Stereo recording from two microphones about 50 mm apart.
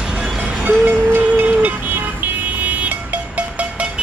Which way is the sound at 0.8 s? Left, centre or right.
Right.